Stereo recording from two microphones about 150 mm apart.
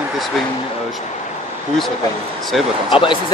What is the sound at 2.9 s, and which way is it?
Speech, 35° left (ahead or behind).